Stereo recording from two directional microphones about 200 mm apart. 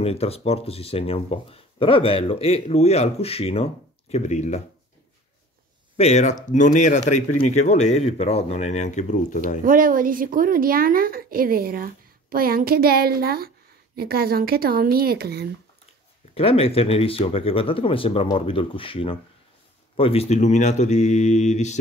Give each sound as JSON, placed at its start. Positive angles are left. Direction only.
{"t": 0.0, "sound": "speech", "side_deg": 30}
{"t": 5.9, "sound": "speech", "side_deg": 35}
{"t": 9.6, "sound": "a woman's voice", "side_deg": -45}
{"t": 16.3, "sound": "speech", "side_deg": 30}